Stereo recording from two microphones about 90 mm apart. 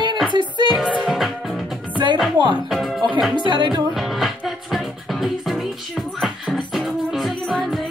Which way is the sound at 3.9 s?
Centre (ahead or behind).